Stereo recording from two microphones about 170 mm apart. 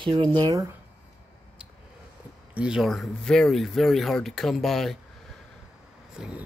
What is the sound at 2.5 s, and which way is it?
Speech, 5° right (ahead or behind).